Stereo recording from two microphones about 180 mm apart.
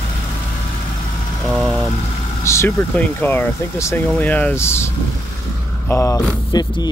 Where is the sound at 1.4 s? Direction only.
Centre (ahead or behind).